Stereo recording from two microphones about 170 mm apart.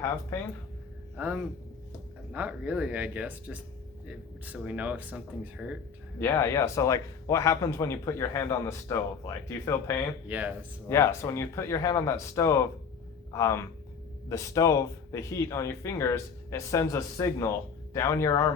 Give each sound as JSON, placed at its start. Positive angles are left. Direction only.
{"t": 1.1, "sound": "speech", "side_deg": -10}
{"t": 6.1, "sound": "speech", "side_deg": 15}
{"t": 10.2, "sound": "speech", "side_deg": -10}
{"t": 10.8, "sound": "speech", "side_deg": 15}